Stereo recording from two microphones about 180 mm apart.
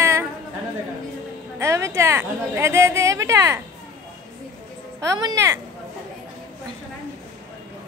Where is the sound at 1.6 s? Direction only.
15° right (ahead or behind).